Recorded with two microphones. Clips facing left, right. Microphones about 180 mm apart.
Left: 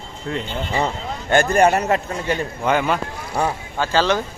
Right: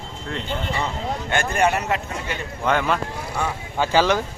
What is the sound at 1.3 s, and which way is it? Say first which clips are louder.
Speech: left 6 dB; 40° left (ahead or behind).